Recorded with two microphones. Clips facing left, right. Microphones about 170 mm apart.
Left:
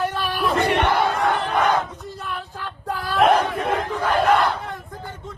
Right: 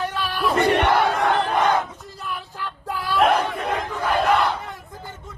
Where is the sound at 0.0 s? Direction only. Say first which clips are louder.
Left 2 dB; 10° left (ahead or behind).